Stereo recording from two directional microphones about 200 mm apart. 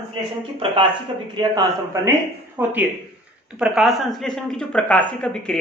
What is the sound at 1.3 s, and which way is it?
A man's voice, 15° right (ahead or behind).